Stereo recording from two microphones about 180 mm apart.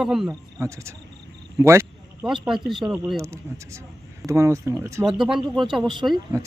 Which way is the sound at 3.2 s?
15° right (ahead or behind).